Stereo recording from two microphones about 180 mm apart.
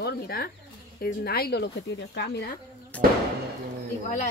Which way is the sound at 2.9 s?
5° left (ahead or behind).